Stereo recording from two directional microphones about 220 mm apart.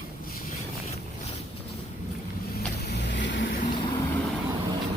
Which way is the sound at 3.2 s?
55° left (ahead or behind).